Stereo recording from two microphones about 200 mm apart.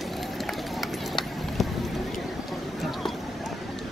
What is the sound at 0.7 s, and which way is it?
Run, centre (ahead or behind).